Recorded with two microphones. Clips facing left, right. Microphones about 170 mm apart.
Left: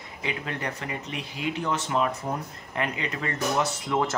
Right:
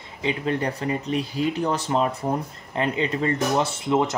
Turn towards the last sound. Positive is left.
turn(degrees=-25)  # may be behind; listen again after turning